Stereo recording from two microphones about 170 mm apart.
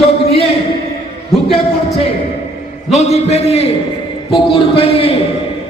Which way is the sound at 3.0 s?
40° left (ahead or behind).